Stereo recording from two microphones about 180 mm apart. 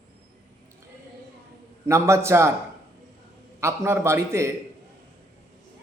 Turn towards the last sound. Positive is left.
turn(degrees=-15)  # may be behind; listen again after turning